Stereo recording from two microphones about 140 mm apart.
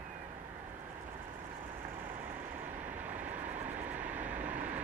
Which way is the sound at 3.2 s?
10° right (ahead or behind).